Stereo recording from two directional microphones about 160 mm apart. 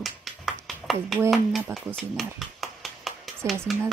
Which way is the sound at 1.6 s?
15° right (ahead or behind).